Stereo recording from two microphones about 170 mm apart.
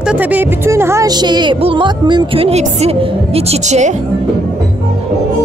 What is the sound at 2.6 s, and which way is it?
A woman's voice, 35° right (ahead or behind).